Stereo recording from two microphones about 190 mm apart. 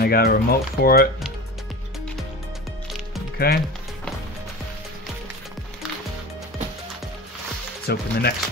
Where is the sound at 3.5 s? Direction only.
55° left (ahead or behind).